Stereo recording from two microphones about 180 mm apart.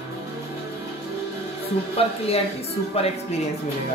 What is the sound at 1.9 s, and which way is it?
Speech, 35° left (ahead or behind).